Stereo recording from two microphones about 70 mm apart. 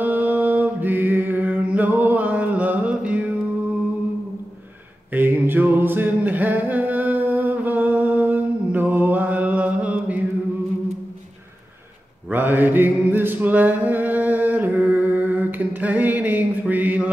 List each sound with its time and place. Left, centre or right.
0.0 s mantra: right
5.1 s a capella: right
12.3 s mantra: right